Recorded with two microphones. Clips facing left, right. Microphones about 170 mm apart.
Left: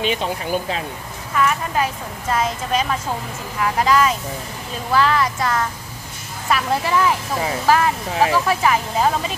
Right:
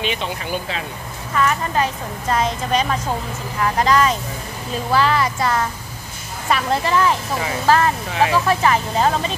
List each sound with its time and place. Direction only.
0.0 s speech: 45° left (ahead or behind)
1.3 s a woman's voice: 5° left (ahead or behind)
6.5 s speech: 10° left (ahead or behind)